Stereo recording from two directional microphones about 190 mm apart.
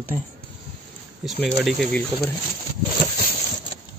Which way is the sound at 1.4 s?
Centre (ahead or behind).